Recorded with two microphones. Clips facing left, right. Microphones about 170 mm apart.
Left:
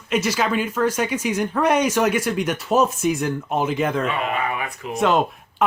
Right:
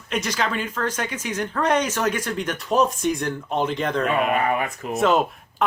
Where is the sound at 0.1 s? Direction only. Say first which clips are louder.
Left 4 dB; 5° left (ahead or behind).